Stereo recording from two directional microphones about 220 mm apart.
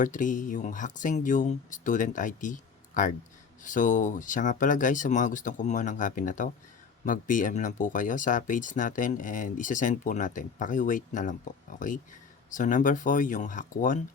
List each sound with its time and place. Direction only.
0.0 s speech: 35° left (ahead or behind)